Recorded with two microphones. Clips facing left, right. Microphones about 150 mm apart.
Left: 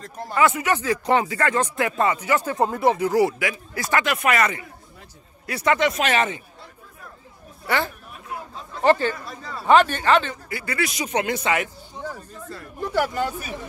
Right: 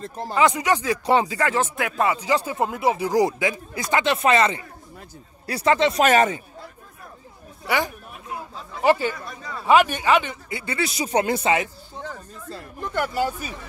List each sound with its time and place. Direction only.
0.0 s speech: 30° right (ahead or behind)
0.4 s speech: 15° right (ahead or behind)
6.0 s speech: 40° right (ahead or behind)
7.6 s speech: 10° right (ahead or behind)
10.6 s speech: 25° right (ahead or behind)
12.8 s speech: 5° left (ahead or behind)